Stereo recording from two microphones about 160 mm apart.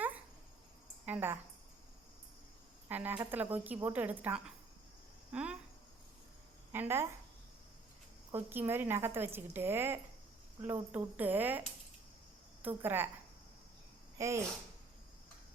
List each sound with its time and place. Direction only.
1.0 s a woman's voice: 10° right (ahead or behind)
2.9 s a woman's voice: 10° right (ahead or behind)
6.7 s a woman's voice: 15° right (ahead or behind)
8.3 s a woman's voice: 15° right (ahead or behind)
12.6 s a woman's voice: 10° right (ahead or behind)
14.2 s speech: 20° right (ahead or behind)